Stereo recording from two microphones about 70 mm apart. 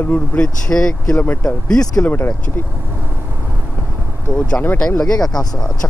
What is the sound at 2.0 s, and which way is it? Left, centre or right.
Speech, left.